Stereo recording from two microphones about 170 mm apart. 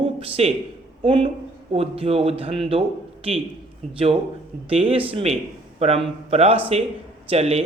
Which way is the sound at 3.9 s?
35° right (ahead or behind).